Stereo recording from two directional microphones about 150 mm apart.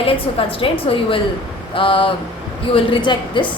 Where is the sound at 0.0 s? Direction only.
40° left (ahead or behind).